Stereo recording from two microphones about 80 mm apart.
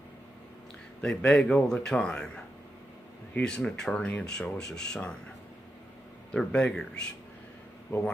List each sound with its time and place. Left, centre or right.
1.0 s speech: centre
3.4 s speech: centre
6.3 s speech: centre
7.9 s speech: left